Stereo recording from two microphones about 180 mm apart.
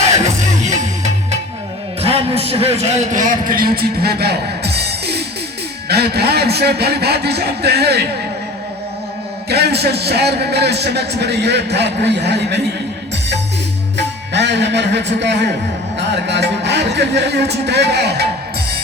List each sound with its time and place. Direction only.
0.6 s music: 40° right (ahead or behind)
2.0 s a man's voice: 35° right (ahead or behind); by 8.0 s 65° right (ahead or behind)
9.5 s a man's voice: 65° right (ahead or behind)
13.9 s a man's voice: 75° right (ahead or behind)